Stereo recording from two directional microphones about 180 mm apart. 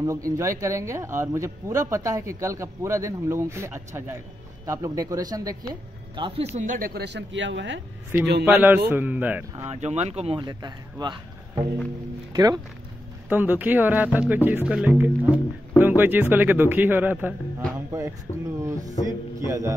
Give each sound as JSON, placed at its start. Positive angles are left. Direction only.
{"t": 0.0, "sound": "speech", "side_deg": -15}
{"t": 6.5, "sound": "speech", "side_deg": -45}
{"t": 8.1, "sound": "speech", "side_deg": -10}
{"t": 9.7, "sound": "speech", "side_deg": -40}
{"t": 13.3, "sound": "speech", "side_deg": -10}
{"t": 17.7, "sound": "a sound", "side_deg": -15}
{"t": 18.6, "sound": "speech", "side_deg": -20}